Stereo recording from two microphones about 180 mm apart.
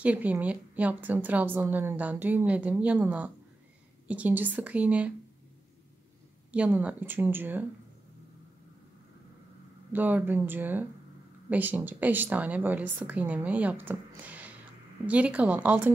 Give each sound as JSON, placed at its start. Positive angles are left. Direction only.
{"t": 0.0, "sound": "a woman's voice", "side_deg": -10}
{"t": 6.5, "sound": "a woman's voice", "side_deg": -5}
{"t": 9.9, "sound": "a woman's voice", "side_deg": -10}